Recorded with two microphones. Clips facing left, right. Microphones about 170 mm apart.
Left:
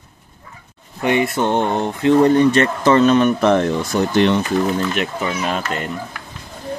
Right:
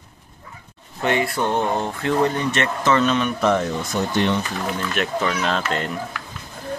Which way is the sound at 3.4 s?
65° left (ahead or behind).